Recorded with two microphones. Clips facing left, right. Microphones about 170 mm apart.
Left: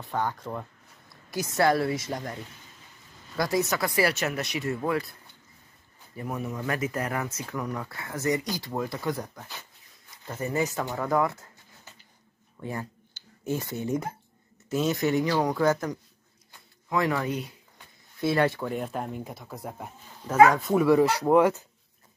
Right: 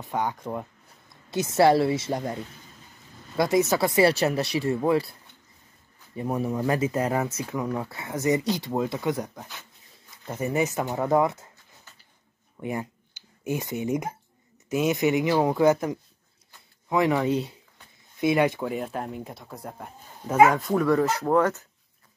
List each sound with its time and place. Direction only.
0.0 s speech: 15° right (ahead or behind)
6.1 s speech: 30° right (ahead or behind)
12.5 s speech: 15° right (ahead or behind)
18.2 s speech: 15° right (ahead or behind); by 19.9 s centre (ahead or behind)
20.2 s speech: 20° right (ahead or behind)
20.5 s speech: 5° left (ahead or behind)